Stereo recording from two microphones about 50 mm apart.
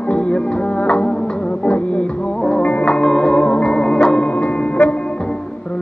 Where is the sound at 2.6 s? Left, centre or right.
Left.